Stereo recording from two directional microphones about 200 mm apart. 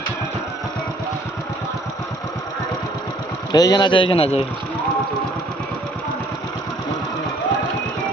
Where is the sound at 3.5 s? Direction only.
20° left (ahead or behind).